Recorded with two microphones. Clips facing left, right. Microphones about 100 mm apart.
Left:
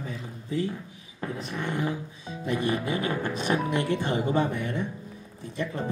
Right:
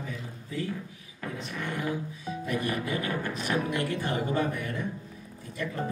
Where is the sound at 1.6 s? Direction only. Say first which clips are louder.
Left 2 dB; 25° left (ahead or behind).